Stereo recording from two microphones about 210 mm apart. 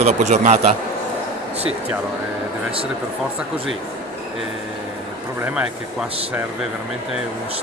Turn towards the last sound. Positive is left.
turn(degrees=-5)  # may be behind; listen again after turning